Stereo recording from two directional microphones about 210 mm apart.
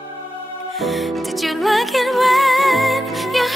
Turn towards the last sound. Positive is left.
turn(degrees=0)  # may be behind; listen again after turning